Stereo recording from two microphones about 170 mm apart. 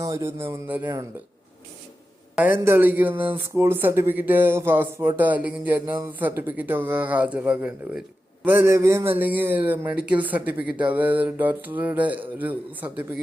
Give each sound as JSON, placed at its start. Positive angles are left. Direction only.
{"t": 0.0, "sound": "speech", "side_deg": -15}
{"t": 2.3, "sound": "speech", "side_deg": -10}